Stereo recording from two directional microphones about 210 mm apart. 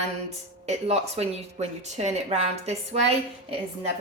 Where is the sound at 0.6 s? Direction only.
30° right (ahead or behind).